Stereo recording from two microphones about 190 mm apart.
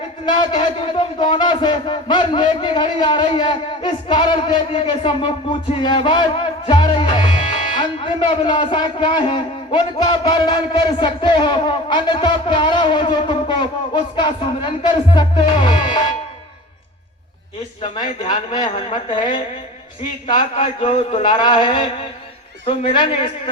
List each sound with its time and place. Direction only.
0.3 s a man's voice: 25° left (ahead or behind)
18.2 s a man's voice: 25° left (ahead or behind)
20.3 s a man's voice: 25° left (ahead or behind)